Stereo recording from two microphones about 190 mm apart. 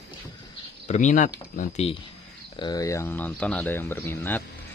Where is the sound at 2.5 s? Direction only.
20° left (ahead or behind).